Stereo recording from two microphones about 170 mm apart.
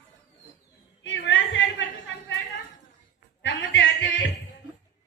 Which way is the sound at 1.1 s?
90° left.